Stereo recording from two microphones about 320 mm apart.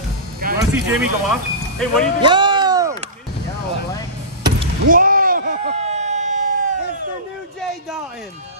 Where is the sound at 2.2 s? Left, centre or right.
Centre.